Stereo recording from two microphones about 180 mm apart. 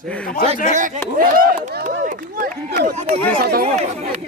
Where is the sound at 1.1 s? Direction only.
50° right (ahead or behind).